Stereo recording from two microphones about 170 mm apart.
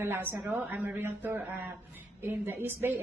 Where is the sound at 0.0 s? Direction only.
15° right (ahead or behind).